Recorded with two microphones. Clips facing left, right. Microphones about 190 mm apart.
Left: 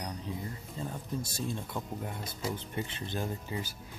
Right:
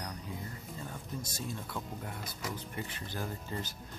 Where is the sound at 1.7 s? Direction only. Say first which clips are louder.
Left 3 dB; 25° left (ahead or behind).